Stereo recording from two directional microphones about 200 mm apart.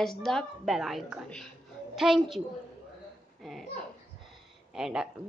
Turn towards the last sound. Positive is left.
turn(degrees=-5)  # may be behind; listen again after turning